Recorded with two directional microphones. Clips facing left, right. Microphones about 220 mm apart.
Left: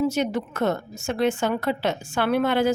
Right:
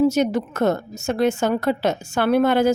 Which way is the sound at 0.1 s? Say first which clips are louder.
Right 5 dB; 40° right (ahead or behind).